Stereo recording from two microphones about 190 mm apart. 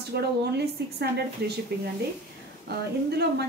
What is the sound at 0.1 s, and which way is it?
A woman's voice, 60° right (ahead or behind).